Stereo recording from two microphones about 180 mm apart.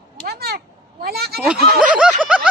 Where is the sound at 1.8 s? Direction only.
5° right (ahead or behind).